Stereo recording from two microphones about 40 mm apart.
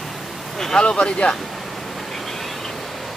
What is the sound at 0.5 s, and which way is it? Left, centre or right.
Speech, centre.